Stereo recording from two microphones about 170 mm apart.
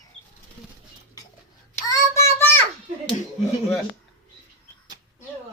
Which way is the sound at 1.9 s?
15° left (ahead or behind).